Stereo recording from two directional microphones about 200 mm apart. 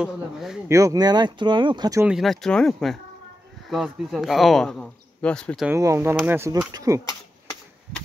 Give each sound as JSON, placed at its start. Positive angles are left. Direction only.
{"t": 0.0, "sound": "speech", "side_deg": 0}
{"t": 0.7, "sound": "speech", "side_deg": -15}
{"t": 2.0, "sound": "speech", "side_deg": 0}
{"t": 5.7, "sound": "speech", "side_deg": -15}